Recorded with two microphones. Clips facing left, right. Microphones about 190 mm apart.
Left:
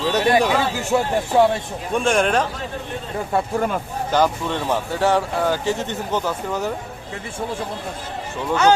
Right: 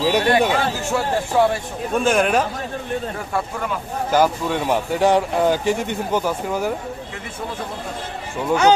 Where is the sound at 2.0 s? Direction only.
5° right (ahead or behind).